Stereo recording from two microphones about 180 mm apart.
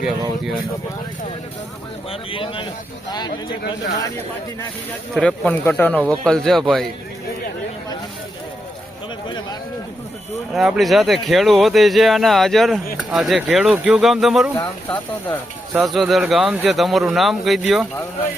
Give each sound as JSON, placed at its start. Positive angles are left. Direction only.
{"t": 2.0, "sound": "speech", "side_deg": 30}
{"t": 5.1, "sound": "speech", "side_deg": 5}
{"t": 10.5, "sound": "speech", "side_deg": 0}
{"t": 14.6, "sound": "speech", "side_deg": 10}